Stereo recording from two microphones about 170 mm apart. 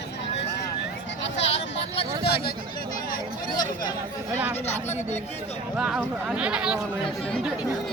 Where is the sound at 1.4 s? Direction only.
90° left.